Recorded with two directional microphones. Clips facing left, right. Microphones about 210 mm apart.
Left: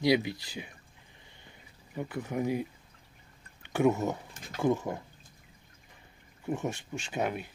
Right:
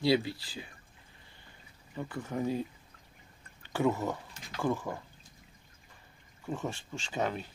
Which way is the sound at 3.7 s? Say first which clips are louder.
Left 3 dB; 20° left (ahead or behind).